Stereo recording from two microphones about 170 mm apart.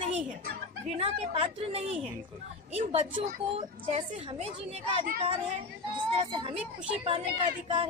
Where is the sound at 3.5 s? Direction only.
35° right (ahead or behind).